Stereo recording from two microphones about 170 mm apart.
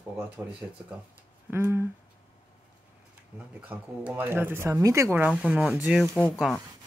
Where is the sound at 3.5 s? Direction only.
5° right (ahead or behind).